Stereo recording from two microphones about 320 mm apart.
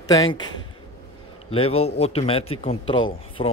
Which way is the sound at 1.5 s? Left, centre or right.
Centre.